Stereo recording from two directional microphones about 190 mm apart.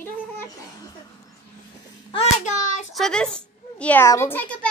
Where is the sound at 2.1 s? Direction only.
35° left (ahead or behind).